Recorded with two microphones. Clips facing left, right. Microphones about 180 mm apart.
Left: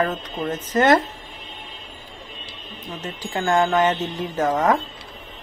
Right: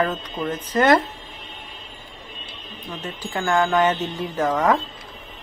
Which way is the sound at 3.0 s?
20° left (ahead or behind).